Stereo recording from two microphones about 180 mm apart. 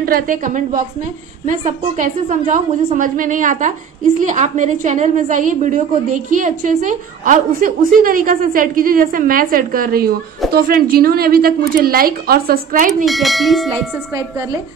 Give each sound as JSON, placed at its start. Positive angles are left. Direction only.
{"t": 0.0, "sound": "a woman's voice", "side_deg": -50}
{"t": 13.0, "sound": "bell", "side_deg": 0}